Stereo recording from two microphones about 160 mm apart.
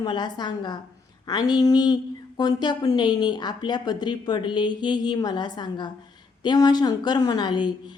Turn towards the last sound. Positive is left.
turn(degrees=30)  # may be behind; listen again after turning